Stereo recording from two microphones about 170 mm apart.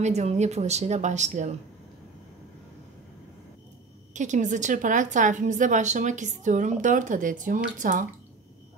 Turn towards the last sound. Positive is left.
turn(degrees=-50)  # may be behind; listen again after turning